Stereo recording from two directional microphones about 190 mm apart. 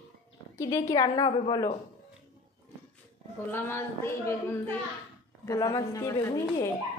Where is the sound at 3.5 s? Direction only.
10° left (ahead or behind).